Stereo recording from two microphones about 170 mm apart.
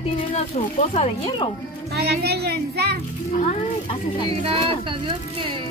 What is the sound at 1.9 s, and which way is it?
Speech, 70° right (ahead or behind).